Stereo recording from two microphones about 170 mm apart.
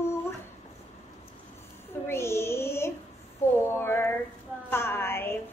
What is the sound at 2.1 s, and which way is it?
A woman's voice, 15° left (ahead or behind).